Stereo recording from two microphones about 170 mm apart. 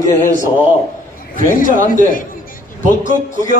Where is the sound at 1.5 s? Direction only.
50° left (ahead or behind).